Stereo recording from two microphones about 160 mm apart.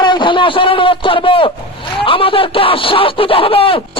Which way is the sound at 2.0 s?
35° left (ahead or behind).